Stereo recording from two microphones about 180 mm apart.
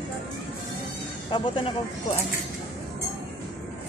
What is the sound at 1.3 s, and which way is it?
Speech, 30° left (ahead or behind).